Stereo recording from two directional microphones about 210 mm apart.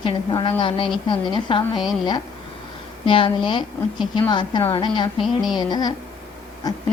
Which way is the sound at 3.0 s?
25° left (ahead or behind).